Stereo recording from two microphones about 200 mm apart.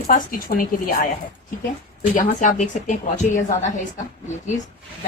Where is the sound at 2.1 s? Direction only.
40° left (ahead or behind).